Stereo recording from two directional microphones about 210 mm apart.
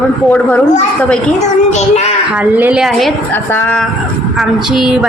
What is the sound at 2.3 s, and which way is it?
A woman's voice, 5° right (ahead or behind).